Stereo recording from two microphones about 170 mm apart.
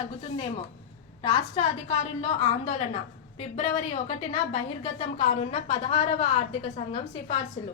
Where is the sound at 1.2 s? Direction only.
35° left (ahead or behind).